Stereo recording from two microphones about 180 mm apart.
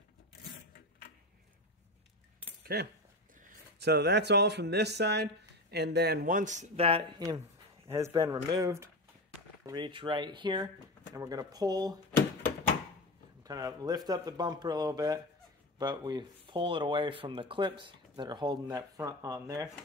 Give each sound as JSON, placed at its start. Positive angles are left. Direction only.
{"t": 2.6, "sound": "speech", "side_deg": -65}
{"t": 7.9, "sound": "speech", "side_deg": -15}
{"t": 13.4, "sound": "speech", "side_deg": -20}